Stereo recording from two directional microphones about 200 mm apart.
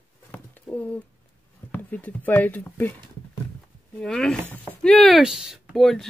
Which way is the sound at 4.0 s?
5° left (ahead or behind).